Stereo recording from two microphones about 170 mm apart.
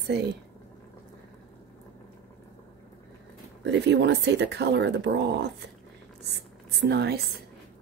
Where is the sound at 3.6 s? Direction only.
85° right.